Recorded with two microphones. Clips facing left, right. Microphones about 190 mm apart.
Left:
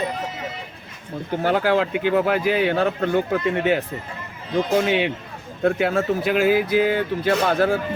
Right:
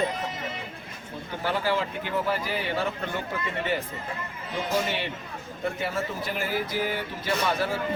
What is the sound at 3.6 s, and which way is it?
Speech, 75° left (ahead or behind).